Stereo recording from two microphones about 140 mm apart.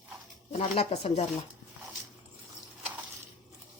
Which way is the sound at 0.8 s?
45° left (ahead or behind).